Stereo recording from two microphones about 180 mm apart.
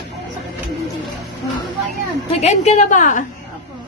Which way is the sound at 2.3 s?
40° left (ahead or behind).